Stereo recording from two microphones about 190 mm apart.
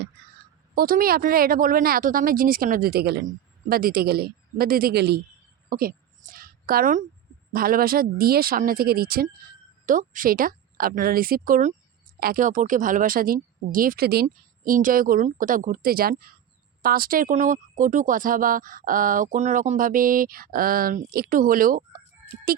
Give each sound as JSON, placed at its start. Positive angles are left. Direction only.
{"t": 0.8, "sound": "speech", "side_deg": -50}
{"t": 6.3, "sound": "a sound", "side_deg": -50}
{"t": 7.5, "sound": "speech", "side_deg": -50}